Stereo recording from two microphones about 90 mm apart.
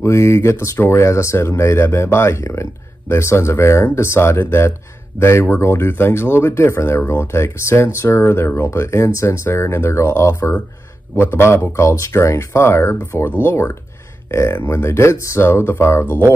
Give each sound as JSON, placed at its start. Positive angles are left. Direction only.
{"t": 0.0, "sound": "speech", "side_deg": 35}